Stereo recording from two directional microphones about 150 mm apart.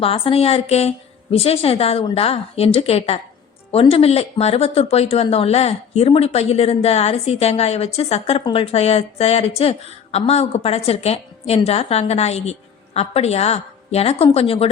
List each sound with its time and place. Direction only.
0.0 s a woman's voice: 40° left (ahead or behind)